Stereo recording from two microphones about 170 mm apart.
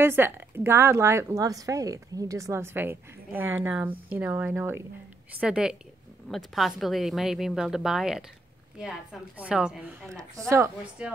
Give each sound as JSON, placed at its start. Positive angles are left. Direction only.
{"t": 0.0, "sound": "a woman's voice", "side_deg": -15}
{"t": 10.3, "sound": "a woman's voice", "side_deg": -20}
{"t": 11.0, "sound": "a woman's voice", "side_deg": -5}